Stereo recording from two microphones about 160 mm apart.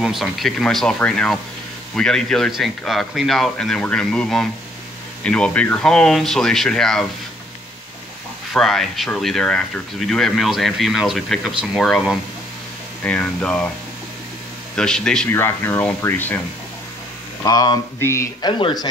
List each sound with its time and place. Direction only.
0.0 s speech: centre (ahead or behind)
8.5 s speech: centre (ahead or behind)
14.8 s speech: 5° left (ahead or behind)
15.2 s speech: 15° left (ahead or behind)
17.4 s a sound: 25° left (ahead or behind)
18.5 s a sound: 30° left (ahead or behind)